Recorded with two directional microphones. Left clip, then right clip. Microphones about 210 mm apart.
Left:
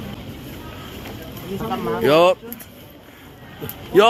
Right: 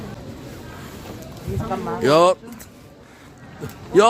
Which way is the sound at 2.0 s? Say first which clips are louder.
Even; 15° right (ahead or behind).